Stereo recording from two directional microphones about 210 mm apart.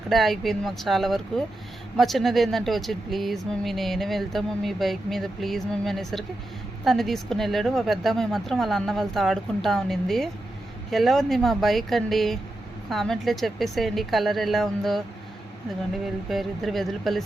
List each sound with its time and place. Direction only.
0.1 s speech: centre (ahead or behind)
16.3 s speech: centre (ahead or behind)